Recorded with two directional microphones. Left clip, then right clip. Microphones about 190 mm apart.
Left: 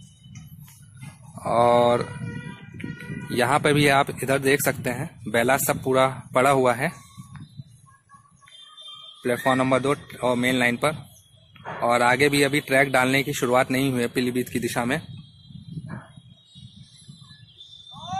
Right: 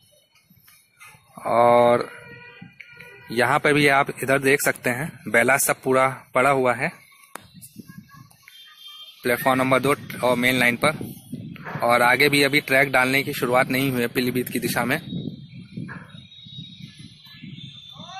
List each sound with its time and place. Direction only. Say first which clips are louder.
1.3 s speech: right 2 dB; centre (ahead or behind)
3.3 s speech: right 1 dB; centre (ahead or behind)
9.2 s speech: right 2 dB; centre (ahead or behind)